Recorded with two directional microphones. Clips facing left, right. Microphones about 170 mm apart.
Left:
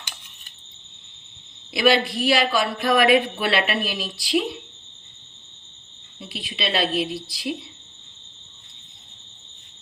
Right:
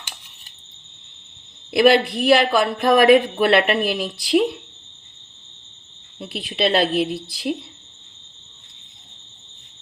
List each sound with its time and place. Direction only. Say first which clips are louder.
1.7 s speech: right 5 dB; 55° right (ahead or behind)
6.1 s speech: right 8 dB; 60° right (ahead or behind)